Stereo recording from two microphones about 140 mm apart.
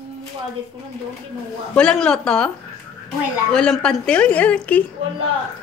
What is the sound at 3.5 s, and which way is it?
A woman's voice, 5° left (ahead or behind).